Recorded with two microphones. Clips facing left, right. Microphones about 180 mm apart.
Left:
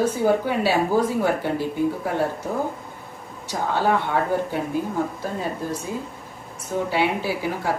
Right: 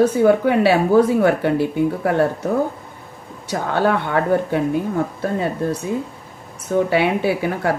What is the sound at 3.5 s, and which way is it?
Speech, 65° right (ahead or behind).